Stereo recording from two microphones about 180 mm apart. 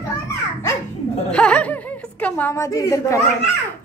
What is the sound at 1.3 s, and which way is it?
A woman's voice, 5° left (ahead or behind).